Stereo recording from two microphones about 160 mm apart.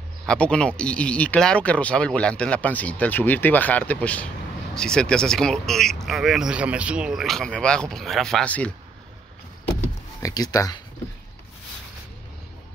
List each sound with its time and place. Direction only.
0.3 s speech: 5° left (ahead or behind)
10.2 s speech: 25° left (ahead or behind)